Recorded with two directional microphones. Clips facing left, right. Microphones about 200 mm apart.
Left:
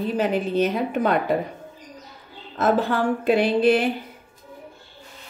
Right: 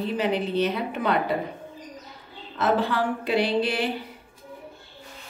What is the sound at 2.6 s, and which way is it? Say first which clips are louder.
Speech: left 3 dB; 45° left (ahead or behind).